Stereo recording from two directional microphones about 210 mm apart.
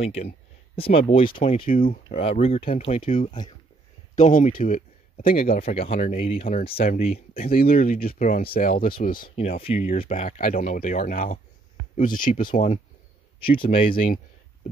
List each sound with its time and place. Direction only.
0.7 s speech: 25° left (ahead or behind)
3.3 s speech: 20° left (ahead or behind)
4.1 s speech: 35° left (ahead or behind)
5.6 s speech: 30° left (ahead or behind)
7.3 s speech: 45° left (ahead or behind)
9.6 s speech: 30° left (ahead or behind)